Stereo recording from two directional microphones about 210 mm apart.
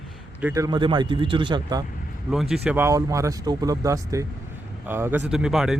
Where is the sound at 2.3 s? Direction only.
Centre (ahead or behind).